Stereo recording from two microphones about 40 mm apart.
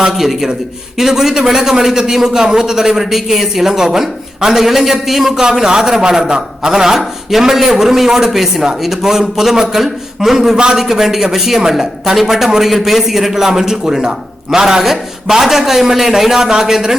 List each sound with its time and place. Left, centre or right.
0.2 s a man's voice: centre
5.3 s a man's voice: centre